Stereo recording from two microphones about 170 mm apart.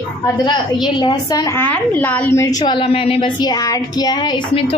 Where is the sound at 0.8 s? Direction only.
25° left (ahead or behind).